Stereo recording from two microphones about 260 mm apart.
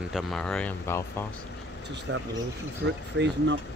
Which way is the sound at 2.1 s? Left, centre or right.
Right.